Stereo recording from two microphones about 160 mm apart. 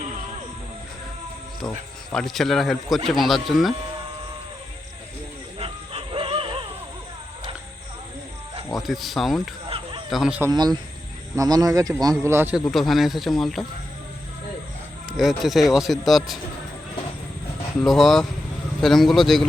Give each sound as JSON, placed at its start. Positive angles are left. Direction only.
{"t": 2.0, "sound": "speech", "side_deg": 0}
{"t": 5.5, "sound": "bow-wow", "side_deg": -35}
{"t": 8.7, "sound": "speech", "side_deg": 0}
{"t": 9.6, "sound": "a sound", "side_deg": -35}
{"t": 10.1, "sound": "speech", "side_deg": -5}
{"t": 10.5, "sound": "speech", "side_deg": -25}
{"t": 12.7, "sound": "speech", "side_deg": 0}
{"t": 15.1, "sound": "speech", "side_deg": 0}
{"t": 17.8, "sound": "speech", "side_deg": 0}